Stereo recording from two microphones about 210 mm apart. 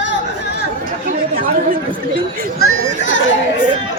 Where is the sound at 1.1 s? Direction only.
45° right (ahead or behind).